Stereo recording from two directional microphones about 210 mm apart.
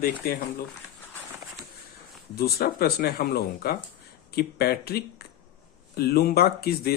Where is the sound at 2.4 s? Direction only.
50° left (ahead or behind).